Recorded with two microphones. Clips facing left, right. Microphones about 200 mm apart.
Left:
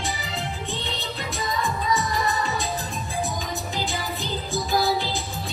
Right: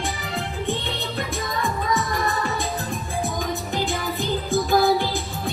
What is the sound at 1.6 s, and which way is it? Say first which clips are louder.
Music: right 1 dB; 55° right (ahead or behind).